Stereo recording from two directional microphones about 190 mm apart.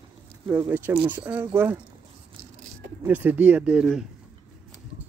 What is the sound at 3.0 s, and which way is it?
Speech, 10° right (ahead or behind).